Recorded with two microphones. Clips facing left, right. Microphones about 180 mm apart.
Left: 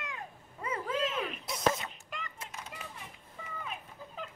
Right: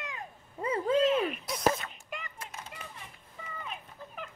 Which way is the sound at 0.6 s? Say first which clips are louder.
Right 7 dB; 30° right (ahead or behind).